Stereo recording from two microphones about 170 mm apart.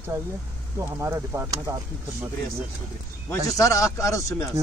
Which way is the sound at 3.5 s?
20° left (ahead or behind).